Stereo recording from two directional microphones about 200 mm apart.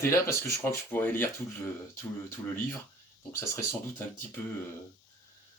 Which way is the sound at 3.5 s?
15° left (ahead or behind).